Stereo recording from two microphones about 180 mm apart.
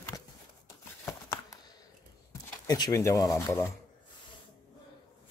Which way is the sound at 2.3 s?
20° left (ahead or behind).